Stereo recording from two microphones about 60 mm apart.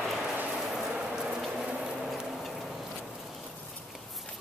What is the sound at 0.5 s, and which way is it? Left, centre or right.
Ratchet, centre.